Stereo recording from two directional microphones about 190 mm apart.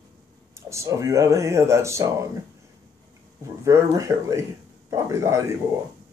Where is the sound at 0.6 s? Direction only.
15° right (ahead or behind).